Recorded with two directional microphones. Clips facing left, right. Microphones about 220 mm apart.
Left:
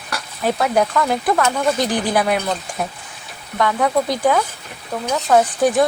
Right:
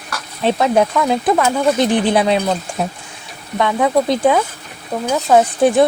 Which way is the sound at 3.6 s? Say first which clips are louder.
Right 3 dB; 20° right (ahead or behind).